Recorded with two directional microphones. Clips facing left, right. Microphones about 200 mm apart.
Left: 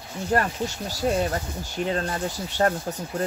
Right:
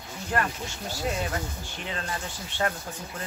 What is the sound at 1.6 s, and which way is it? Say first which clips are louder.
Speech: left 9 dB; 40° left (ahead or behind).